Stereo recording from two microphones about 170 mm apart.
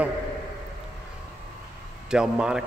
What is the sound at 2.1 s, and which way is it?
Speech, 5° right (ahead or behind).